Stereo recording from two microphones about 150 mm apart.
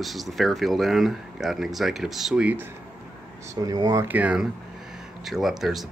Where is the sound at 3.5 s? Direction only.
25° right (ahead or behind).